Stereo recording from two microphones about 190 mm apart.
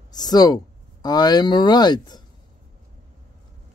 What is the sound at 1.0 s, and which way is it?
Speech, 20° left (ahead or behind).